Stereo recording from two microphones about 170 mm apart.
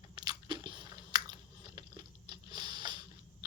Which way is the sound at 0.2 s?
25° right (ahead or behind).